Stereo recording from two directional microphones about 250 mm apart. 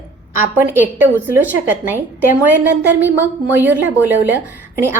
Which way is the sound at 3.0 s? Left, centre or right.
Centre.